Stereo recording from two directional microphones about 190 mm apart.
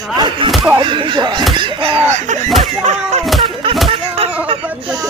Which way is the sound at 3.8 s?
30° right (ahead or behind).